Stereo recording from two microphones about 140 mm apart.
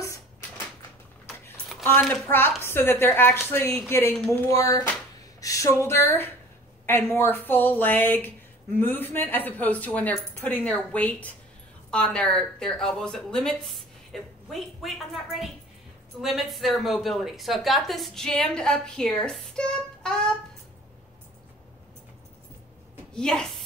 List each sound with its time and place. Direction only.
1.2 s a sound: centre (ahead or behind)
2.2 s speech: 15° left (ahead or behind)
4.3 s a woman's voice: 25° left (ahead or behind); by 20.2 s 5° left (ahead or behind)
23.1 s a woman's voice: 5° left (ahead or behind)